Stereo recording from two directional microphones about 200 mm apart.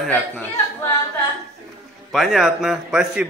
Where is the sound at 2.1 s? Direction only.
Centre (ahead or behind).